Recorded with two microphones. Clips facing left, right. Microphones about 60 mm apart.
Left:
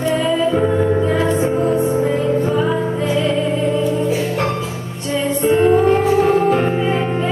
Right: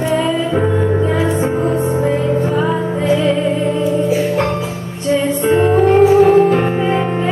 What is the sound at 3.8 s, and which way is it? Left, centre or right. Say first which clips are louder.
Music: right 3 dB; centre.